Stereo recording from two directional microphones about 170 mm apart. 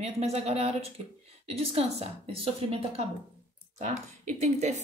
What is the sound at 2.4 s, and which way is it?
Speech, 35° right (ahead or behind).